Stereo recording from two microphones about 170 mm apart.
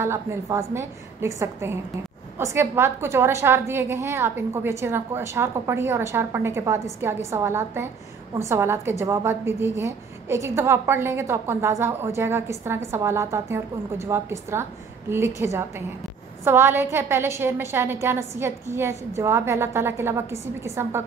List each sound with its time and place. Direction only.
0.0 s a woman's voice: 15° right (ahead or behind)